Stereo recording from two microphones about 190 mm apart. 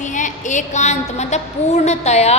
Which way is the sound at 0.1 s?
40° left (ahead or behind).